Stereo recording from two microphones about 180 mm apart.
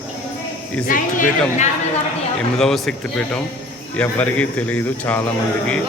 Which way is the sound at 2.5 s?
Centre (ahead or behind).